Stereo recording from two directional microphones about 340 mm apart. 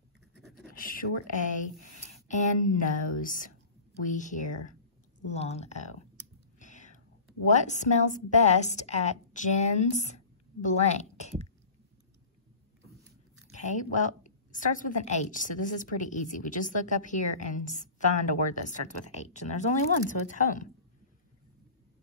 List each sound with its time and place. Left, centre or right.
0.7 s a woman's voice: left
2.2 s a woman's voice: left
6.6 s whispering: left
7.4 s a woman's voice: left
13.5 s a woman's voice: left